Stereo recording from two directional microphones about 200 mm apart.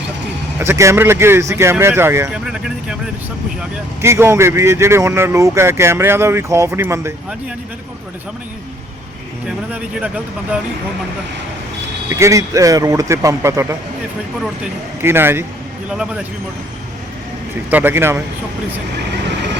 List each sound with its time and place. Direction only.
0.6 s speech: 15° right (ahead or behind)
9.5 s speech: 5° right (ahead or behind)
12.0 s speech: 15° right (ahead or behind)
17.7 s speech: 10° right (ahead or behind)